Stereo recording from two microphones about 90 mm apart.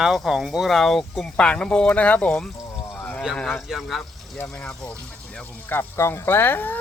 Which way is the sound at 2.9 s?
15° left (ahead or behind).